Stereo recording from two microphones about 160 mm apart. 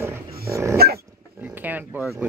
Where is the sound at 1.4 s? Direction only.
10° right (ahead or behind).